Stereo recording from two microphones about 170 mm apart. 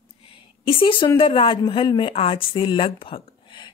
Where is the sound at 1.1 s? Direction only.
30° left (ahead or behind).